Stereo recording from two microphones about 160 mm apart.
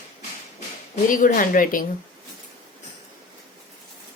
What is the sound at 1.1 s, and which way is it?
Speech, 60° left (ahead or behind).